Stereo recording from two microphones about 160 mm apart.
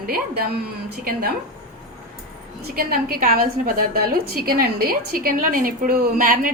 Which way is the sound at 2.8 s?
70° right (ahead or behind).